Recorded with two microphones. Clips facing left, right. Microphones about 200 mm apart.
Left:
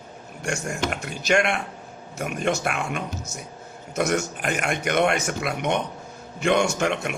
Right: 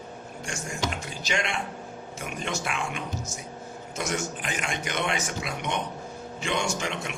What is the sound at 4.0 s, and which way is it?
Speech, 60° left (ahead or behind).